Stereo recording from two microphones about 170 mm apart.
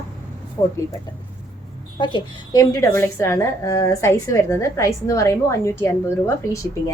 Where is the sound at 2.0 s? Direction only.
25° left (ahead or behind).